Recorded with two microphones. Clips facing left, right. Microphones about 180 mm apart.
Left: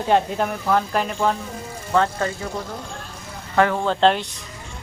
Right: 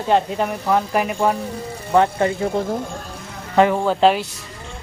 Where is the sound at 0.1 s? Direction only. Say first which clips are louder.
Right 1 dB; centre (ahead or behind).